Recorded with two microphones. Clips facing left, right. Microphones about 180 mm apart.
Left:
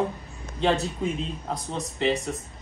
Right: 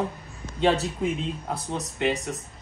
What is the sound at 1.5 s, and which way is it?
Speech, centre (ahead or behind).